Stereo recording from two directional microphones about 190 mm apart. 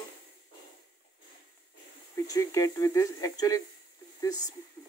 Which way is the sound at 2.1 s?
20° left (ahead or behind).